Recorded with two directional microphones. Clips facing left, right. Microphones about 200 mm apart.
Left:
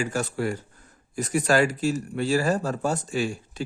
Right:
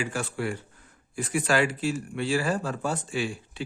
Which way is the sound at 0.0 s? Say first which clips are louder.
Left 3 dB; 40° left (ahead or behind).